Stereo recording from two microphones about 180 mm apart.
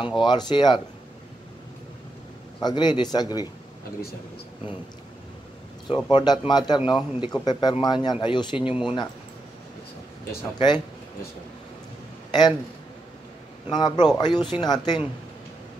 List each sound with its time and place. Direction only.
0.2 s speech: 25° left (ahead or behind)
2.6 s speech: 25° left (ahead or behind)
6.0 s speech: 25° left (ahead or behind)
12.3 s a man's voice: 25° left (ahead or behind)
13.7 s speech: 25° left (ahead or behind)